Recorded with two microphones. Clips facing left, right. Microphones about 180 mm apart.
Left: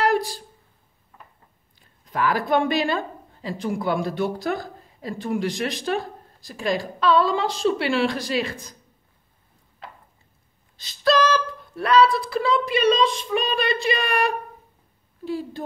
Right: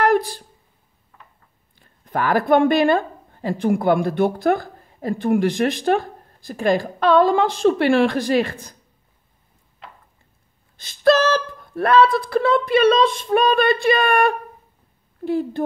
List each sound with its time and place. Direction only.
0.0 s a sound: 55° right (ahead or behind)
2.0 s speech: 55° right (ahead or behind)
10.8 s speech: 50° right (ahead or behind)